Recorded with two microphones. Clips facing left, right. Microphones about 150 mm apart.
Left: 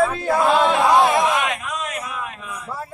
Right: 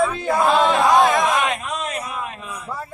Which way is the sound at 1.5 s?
30° right (ahead or behind).